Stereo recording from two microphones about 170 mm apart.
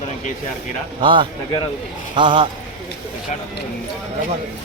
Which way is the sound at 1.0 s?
30° right (ahead or behind).